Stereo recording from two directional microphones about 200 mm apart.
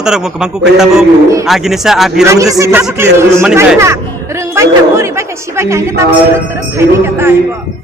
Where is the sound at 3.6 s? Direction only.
15° right (ahead or behind).